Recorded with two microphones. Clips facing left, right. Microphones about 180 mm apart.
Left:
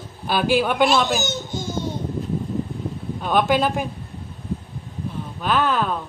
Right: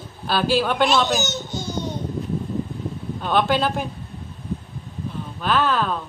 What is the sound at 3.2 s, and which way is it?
Speech, 10° left (ahead or behind).